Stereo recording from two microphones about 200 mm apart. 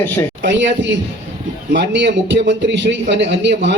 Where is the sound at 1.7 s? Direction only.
60° right (ahead or behind).